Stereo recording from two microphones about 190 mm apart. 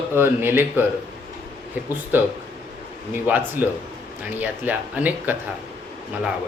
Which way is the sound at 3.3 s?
10° right (ahead or behind).